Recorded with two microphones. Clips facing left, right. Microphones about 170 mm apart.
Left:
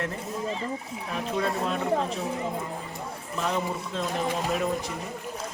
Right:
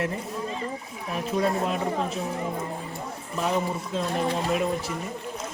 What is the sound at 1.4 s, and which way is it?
Speech, 10° right (ahead or behind).